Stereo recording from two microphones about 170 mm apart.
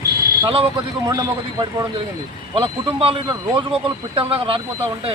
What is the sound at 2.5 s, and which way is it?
Speech, 30° right (ahead or behind).